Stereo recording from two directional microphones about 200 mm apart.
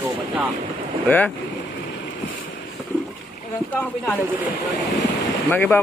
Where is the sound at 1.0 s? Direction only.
10° left (ahead or behind).